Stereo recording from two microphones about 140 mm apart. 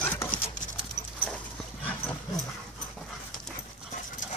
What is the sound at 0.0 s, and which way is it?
Dog, 15° left (ahead or behind).